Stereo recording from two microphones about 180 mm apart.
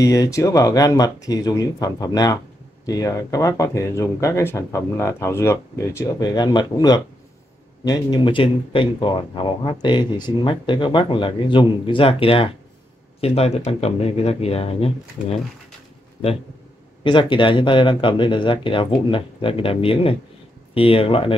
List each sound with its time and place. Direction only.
0.0 s speech: 20° left (ahead or behind); by 14.9 s 35° left (ahead or behind)
17.0 s speech: 25° left (ahead or behind)